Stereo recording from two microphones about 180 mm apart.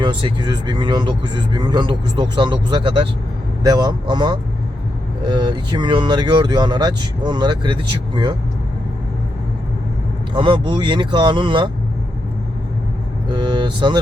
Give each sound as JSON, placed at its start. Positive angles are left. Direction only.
{"t": 0.0, "sound": "speech", "side_deg": -25}
{"t": 10.3, "sound": "speech", "side_deg": -30}
{"t": 13.2, "sound": "vehicle", "side_deg": -25}